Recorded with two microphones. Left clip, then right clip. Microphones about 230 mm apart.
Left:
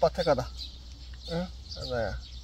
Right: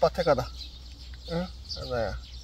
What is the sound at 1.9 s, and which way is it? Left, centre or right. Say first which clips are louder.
Speech: right 1 dB; centre.